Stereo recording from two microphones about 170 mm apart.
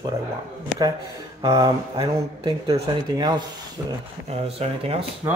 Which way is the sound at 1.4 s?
20° right (ahead or behind).